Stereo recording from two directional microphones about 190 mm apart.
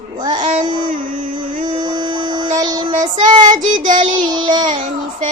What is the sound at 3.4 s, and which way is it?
Child singing, 40° right (ahead or behind).